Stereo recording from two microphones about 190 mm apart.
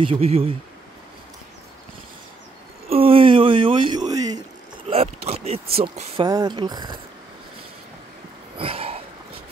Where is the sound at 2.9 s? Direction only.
30° right (ahead or behind).